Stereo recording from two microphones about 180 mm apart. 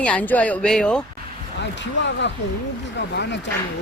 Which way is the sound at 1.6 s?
80° left.